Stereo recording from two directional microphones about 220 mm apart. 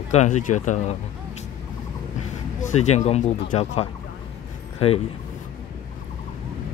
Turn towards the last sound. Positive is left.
turn(degrees=25)  # may be behind; listen again after turning